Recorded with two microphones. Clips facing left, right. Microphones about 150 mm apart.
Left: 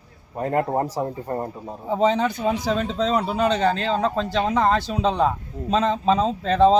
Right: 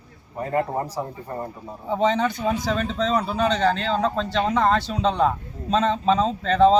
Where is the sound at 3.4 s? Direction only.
5° left (ahead or behind).